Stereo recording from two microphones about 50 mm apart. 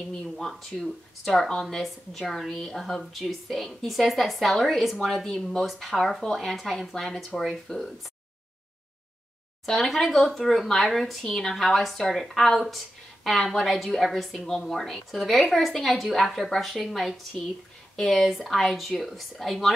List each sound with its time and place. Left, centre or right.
0.4 s speech: centre
5.7 s speech: centre
9.7 s speech: centre